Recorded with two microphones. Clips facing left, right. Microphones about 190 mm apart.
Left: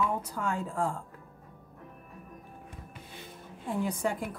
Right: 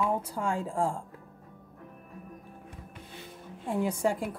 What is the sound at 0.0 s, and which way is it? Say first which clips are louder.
Speech: right 2 dB; 30° right (ahead or behind).